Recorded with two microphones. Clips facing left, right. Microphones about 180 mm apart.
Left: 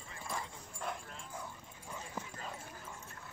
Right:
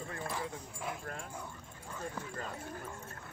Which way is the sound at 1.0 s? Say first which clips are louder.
Right 7 dB; 55° right (ahead or behind).